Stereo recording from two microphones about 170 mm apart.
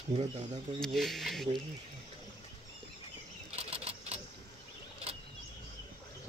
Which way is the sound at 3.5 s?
40° right (ahead or behind).